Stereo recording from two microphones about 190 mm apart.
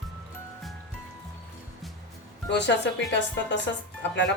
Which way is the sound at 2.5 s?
65° left (ahead or behind).